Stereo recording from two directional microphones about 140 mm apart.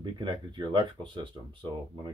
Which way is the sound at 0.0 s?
35° right (ahead or behind).